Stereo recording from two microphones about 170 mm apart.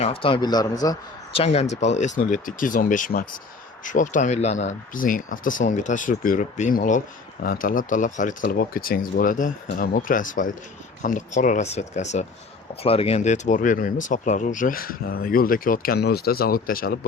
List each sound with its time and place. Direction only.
0.0 s a man's voice: 35° left (ahead or behind)
1.3 s a man's voice: 35° left (ahead or behind); by 16.9 s 60° left (ahead or behind)